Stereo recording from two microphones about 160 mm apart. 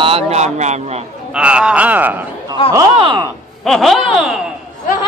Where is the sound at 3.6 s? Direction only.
Centre (ahead or behind).